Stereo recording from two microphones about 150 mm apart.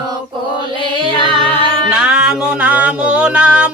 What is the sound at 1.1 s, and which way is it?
Music, 35° left (ahead or behind).